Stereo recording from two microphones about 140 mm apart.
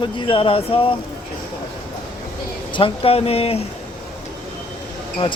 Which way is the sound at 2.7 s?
40° left (ahead or behind).